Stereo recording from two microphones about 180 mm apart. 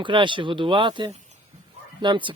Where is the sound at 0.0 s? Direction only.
25° right (ahead or behind).